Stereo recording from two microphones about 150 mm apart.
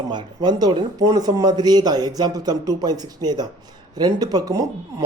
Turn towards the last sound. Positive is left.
turn(degrees=-25)  # may be behind; listen again after turning